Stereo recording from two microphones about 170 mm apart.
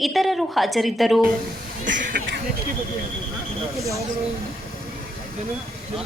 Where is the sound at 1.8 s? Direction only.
90° right.